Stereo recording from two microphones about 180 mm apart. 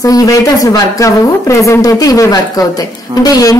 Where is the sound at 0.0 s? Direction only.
20° left (ahead or behind).